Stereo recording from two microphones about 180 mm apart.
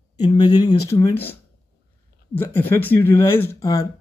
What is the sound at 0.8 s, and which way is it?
Speech, 15° left (ahead or behind).